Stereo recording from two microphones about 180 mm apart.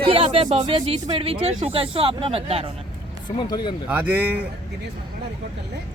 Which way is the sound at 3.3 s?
25° left (ahead or behind).